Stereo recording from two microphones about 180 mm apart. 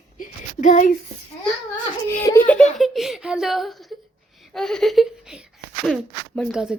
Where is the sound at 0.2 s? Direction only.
40° left (ahead or behind).